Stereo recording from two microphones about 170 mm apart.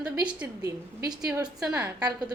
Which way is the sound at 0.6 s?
20° right (ahead or behind).